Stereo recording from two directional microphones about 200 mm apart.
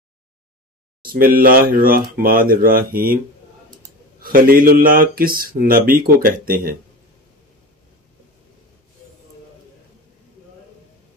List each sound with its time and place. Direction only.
1.0 s speech: 45° right (ahead or behind)
4.2 s speech: 45° right (ahead or behind)